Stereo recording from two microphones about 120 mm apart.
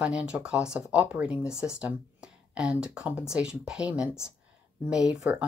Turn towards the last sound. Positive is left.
turn(degrees=-10)  # may be behind; listen again after turning